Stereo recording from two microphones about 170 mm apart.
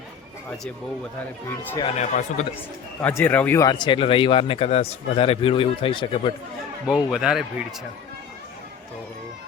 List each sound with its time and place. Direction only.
1.8 s speech: 45° left (ahead or behind)
3.0 s speech: 15° left (ahead or behind)
3.7 s speech: 25° left (ahead or behind)
6.8 s a man's voice: 5° right (ahead or behind)